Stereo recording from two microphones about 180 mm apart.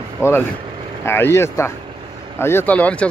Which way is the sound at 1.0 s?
15° left (ahead or behind).